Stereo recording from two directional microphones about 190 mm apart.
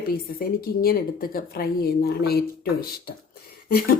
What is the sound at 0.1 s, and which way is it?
A woman's voice, 50° left (ahead or behind).